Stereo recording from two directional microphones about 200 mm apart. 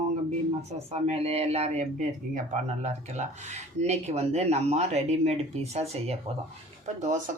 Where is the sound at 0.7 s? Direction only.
30° right (ahead or behind).